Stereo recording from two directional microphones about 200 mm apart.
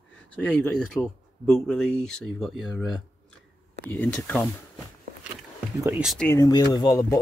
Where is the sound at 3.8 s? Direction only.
10° left (ahead or behind).